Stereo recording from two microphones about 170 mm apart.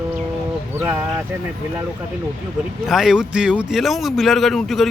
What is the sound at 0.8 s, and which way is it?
Speech, 10° right (ahead or behind).